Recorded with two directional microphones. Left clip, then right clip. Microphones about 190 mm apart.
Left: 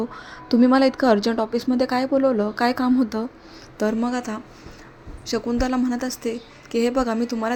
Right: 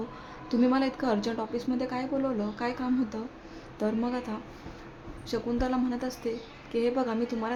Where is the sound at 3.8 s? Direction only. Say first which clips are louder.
Left 7 dB; 25° left (ahead or behind).